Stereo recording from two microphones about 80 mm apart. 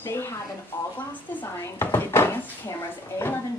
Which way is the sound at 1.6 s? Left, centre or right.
Left.